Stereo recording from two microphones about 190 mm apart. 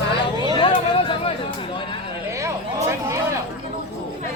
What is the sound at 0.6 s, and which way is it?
Chatter, 25° left (ahead or behind).